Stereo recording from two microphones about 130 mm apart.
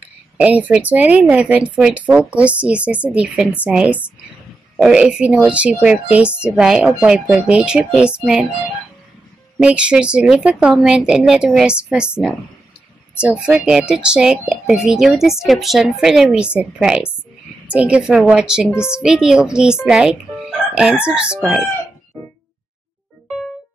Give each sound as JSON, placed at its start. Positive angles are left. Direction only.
{"t": 0.4, "sound": "a woman's voice", "side_deg": -10}
{"t": 9.6, "sound": "a woman's voice", "side_deg": -10}
{"t": 13.2, "sound": "a woman's voice", "side_deg": -10}
{"t": 18.7, "sound": "speech", "side_deg": 20}
{"t": 18.9, "sound": "speech", "side_deg": -5}